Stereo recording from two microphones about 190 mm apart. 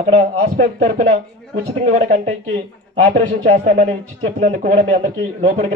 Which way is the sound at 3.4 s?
40° right (ahead or behind).